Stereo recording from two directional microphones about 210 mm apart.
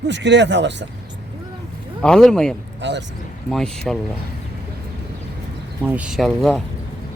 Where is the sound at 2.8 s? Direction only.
60° right (ahead or behind).